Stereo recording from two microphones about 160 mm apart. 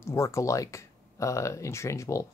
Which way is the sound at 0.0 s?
20° left (ahead or behind).